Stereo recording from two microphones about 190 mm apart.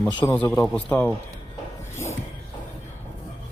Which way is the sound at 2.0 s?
15° left (ahead or behind).